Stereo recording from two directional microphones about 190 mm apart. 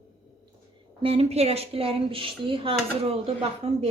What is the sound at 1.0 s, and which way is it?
Speech, 30° right (ahead or behind).